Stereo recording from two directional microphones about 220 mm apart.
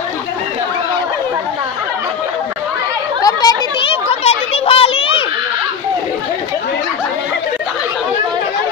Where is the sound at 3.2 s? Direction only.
20° left (ahead or behind).